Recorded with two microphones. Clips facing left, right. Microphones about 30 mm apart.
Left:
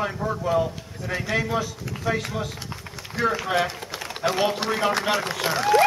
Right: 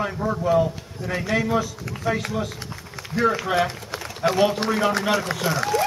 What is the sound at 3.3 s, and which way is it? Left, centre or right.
A man's voice, centre.